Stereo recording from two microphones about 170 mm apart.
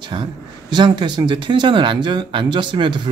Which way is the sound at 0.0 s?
25° right (ahead or behind).